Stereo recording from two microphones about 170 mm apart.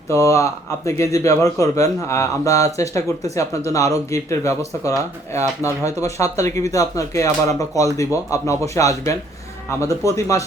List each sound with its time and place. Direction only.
0.1 s speech: 15° left (ahead or behind)
10.2 s speech: 20° left (ahead or behind)